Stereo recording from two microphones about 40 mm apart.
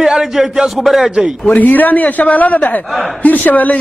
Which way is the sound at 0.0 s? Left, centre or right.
Centre.